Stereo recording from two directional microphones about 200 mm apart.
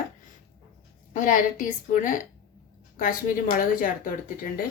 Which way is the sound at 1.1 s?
40° left (ahead or behind).